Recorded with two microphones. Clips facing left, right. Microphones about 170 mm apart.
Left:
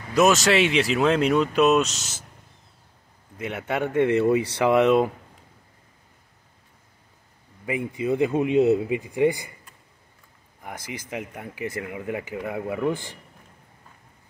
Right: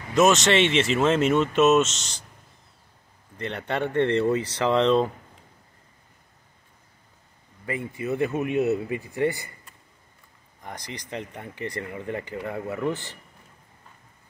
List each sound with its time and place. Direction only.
0.1 s speech: centre (ahead or behind)
3.3 s speech: 5° left (ahead or behind)
7.6 s speech: 15° left (ahead or behind)
10.6 s speech: 5° left (ahead or behind)